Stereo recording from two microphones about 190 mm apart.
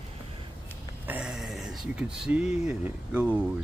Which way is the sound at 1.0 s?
5° right (ahead or behind).